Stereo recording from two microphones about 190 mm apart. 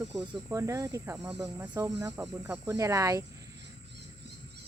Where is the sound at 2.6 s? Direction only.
15° right (ahead or behind).